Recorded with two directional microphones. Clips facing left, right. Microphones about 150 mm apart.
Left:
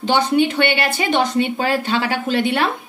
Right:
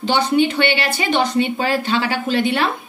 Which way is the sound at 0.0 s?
50° left (ahead or behind).